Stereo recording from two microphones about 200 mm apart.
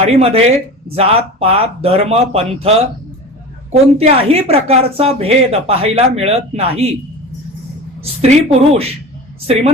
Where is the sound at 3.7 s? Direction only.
30° right (ahead or behind).